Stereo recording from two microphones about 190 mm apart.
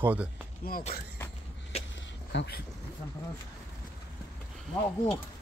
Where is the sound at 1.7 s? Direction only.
30° left (ahead or behind).